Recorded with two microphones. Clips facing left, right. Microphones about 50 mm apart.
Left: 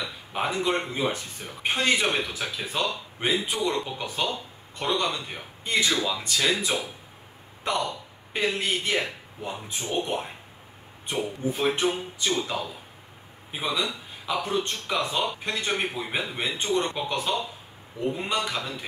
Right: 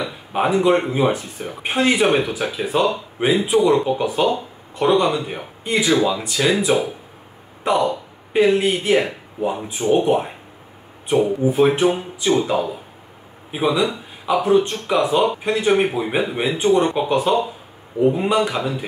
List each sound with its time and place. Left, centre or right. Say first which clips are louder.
0.0 s a man's voice: right 8 dB; centre